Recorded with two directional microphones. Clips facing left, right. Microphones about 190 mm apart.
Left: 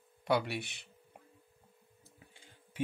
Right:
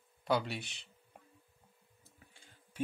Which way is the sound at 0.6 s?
55° left (ahead or behind).